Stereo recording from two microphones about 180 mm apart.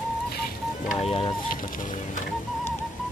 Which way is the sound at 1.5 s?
50° left (ahead or behind).